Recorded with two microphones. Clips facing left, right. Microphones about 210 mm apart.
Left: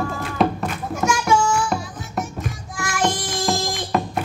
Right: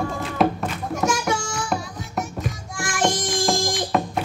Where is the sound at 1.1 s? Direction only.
40° right (ahead or behind).